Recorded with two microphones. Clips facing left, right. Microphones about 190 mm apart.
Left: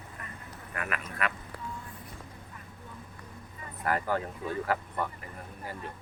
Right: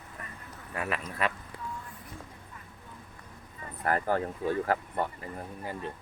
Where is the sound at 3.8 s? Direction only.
45° right (ahead or behind).